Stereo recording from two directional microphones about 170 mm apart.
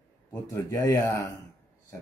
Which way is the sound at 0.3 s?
15° left (ahead or behind).